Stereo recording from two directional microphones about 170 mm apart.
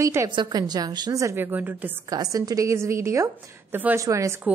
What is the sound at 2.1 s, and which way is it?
A woman's voice, 20° right (ahead or behind).